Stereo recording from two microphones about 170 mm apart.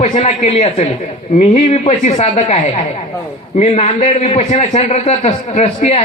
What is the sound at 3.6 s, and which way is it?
A man's voice, 40° left (ahead or behind).